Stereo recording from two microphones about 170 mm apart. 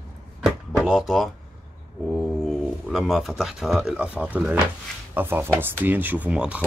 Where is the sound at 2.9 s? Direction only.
Centre (ahead or behind).